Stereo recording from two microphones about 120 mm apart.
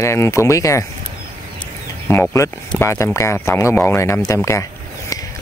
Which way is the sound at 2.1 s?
25° left (ahead or behind).